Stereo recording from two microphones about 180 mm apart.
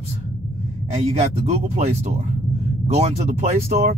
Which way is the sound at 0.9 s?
35° right (ahead or behind).